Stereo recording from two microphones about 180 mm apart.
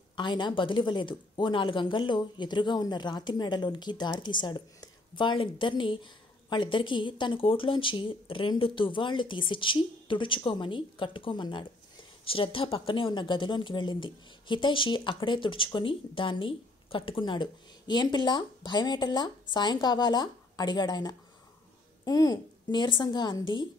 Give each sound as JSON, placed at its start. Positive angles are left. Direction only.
{"t": 0.1, "sound": "a woman's voice", "side_deg": 25}